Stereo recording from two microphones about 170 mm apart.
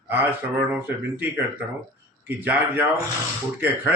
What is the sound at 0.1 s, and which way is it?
A man's voice, 10° right (ahead or behind).